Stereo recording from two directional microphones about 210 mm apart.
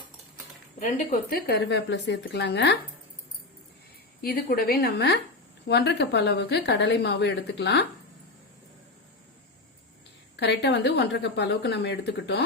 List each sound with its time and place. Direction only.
0.8 s speech: 35° left (ahead or behind)
1.5 s a woman's voice: 55° left (ahead or behind)
4.2 s a woman's voice: 45° left (ahead or behind)
10.3 s a woman's voice: 55° left (ahead or behind)